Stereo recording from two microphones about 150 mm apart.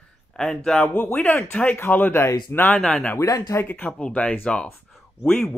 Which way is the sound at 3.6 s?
10° left (ahead or behind).